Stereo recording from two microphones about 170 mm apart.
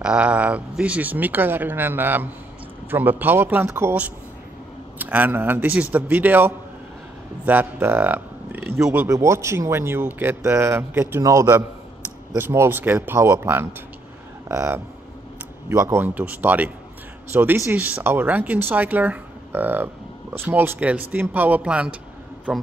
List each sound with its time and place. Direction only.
0.0 s speech: 5° right (ahead or behind)